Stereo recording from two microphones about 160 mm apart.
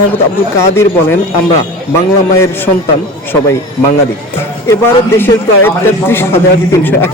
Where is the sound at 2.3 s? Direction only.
15° left (ahead or behind).